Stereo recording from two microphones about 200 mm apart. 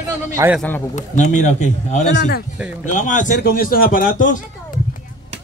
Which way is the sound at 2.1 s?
50° left (ahead or behind).